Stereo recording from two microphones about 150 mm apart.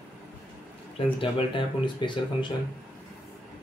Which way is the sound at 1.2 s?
35° left (ahead or behind).